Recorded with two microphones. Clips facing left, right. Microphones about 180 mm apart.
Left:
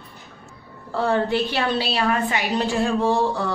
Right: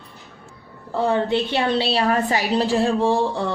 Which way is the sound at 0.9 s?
20° right (ahead or behind).